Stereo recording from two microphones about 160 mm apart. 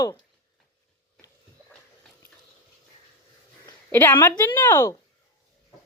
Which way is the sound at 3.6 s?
15° left (ahead or behind).